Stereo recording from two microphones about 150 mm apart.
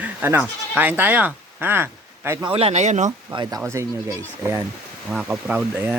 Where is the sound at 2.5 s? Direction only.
40° right (ahead or behind).